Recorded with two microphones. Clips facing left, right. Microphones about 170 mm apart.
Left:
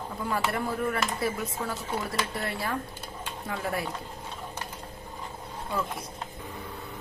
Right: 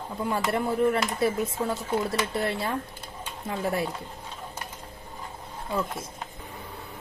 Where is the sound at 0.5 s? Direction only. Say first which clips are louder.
Right 5 dB; 20° right (ahead or behind).